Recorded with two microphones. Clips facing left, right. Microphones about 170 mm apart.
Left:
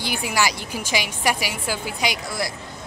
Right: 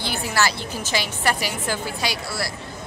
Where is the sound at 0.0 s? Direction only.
15° left (ahead or behind).